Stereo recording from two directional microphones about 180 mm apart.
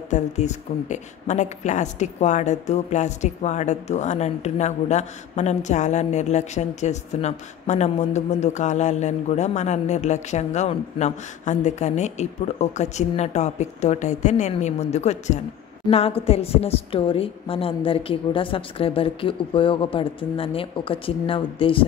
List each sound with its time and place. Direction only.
0.1 s speech: 40° left (ahead or behind)